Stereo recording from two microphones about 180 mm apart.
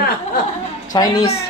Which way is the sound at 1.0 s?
25° left (ahead or behind).